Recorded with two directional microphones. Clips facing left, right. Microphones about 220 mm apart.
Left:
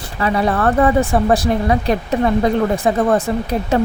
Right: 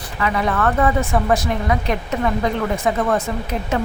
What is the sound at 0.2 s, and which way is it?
Speech, 35° left (ahead or behind).